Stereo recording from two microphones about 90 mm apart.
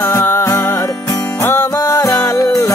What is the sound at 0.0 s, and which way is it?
Music, 25° left (ahead or behind).